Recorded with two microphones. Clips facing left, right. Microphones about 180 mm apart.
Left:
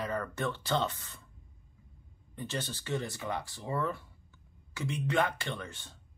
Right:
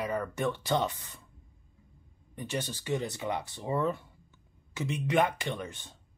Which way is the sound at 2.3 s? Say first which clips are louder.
Right 2 dB; 15° right (ahead or behind).